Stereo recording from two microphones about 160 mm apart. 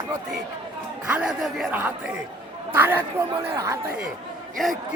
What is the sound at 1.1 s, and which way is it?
Speech, 5° right (ahead or behind).